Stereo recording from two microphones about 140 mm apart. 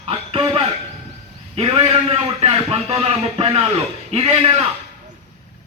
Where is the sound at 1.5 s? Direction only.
45° right (ahead or behind).